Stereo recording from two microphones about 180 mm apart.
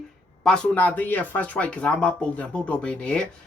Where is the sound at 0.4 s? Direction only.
5° left (ahead or behind).